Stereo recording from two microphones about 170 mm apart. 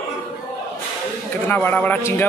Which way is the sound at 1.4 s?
10° left (ahead or behind).